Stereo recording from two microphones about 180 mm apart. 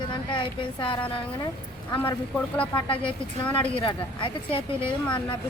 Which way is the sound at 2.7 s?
25° left (ahead or behind).